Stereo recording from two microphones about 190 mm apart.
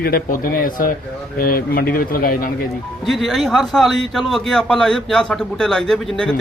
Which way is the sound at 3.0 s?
Centre (ahead or behind).